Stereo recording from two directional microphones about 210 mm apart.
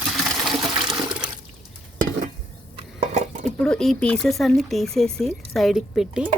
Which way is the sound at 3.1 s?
35° right (ahead or behind).